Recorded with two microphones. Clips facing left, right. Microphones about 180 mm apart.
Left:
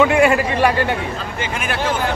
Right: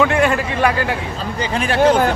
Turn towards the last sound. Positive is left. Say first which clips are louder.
# left 2 dB
turn(degrees=5)  # may be behind; listen again after turning